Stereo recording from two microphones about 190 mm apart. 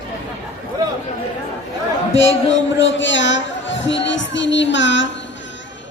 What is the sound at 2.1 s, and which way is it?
A man's voice, 75° left (ahead or behind).